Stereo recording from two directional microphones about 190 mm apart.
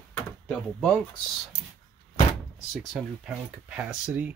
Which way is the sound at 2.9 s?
5° right (ahead or behind).